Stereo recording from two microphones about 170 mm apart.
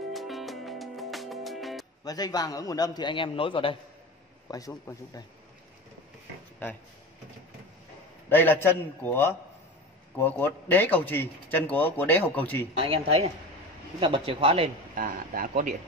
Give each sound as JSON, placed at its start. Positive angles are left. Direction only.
{"t": 0.1, "sound": "music", "side_deg": 0}
{"t": 2.0, "sound": "a man's voice", "side_deg": 20}
{"t": 4.5, "sound": "a man's voice", "side_deg": 20}
{"t": 8.3, "sound": "a man's voice", "side_deg": 10}
{"t": 12.7, "sound": "speech", "side_deg": -35}
{"t": 15.0, "sound": "speech", "side_deg": -55}